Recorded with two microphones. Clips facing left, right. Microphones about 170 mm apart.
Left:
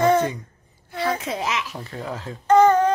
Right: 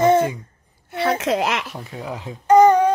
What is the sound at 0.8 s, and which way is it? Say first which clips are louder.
Speech: right 5 dB; 70° right (ahead or behind).